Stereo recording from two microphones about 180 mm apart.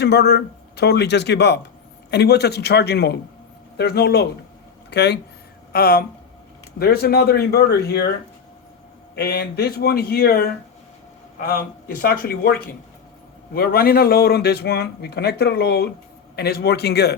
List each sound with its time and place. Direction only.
0.0 s speech: 65° left (ahead or behind)
5.7 s speech: 60° left (ahead or behind)
9.1 s speech: 65° left (ahead or behind)